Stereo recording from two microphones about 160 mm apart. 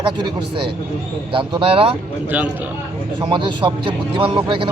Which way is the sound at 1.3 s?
35° right (ahead or behind).